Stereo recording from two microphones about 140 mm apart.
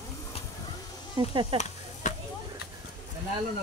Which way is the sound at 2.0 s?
60° left (ahead or behind).